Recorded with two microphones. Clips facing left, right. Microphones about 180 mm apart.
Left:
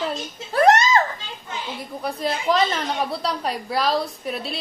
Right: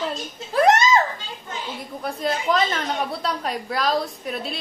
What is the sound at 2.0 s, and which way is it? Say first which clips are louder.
A woman's voice: even; centre (ahead or behind).